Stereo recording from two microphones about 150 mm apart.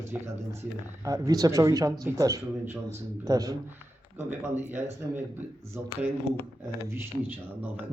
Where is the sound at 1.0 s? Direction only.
20° right (ahead or behind).